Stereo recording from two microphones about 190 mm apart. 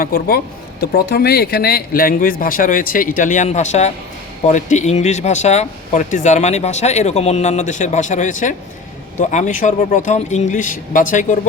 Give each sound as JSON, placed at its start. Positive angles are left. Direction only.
{"t": 0.0, "sound": "speech", "side_deg": 50}